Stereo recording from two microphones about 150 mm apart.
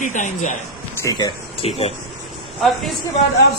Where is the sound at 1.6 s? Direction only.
40° left (ahead or behind).